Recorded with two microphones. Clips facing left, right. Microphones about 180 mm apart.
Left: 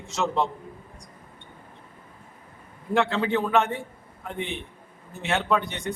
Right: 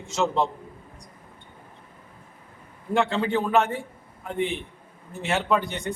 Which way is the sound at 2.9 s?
Centre (ahead or behind).